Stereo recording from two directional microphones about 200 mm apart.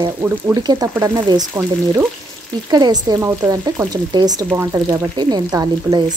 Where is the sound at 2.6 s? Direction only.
20° right (ahead or behind).